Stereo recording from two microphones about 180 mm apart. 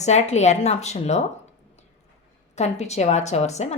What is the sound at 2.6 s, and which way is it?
Speech, 40° left (ahead or behind).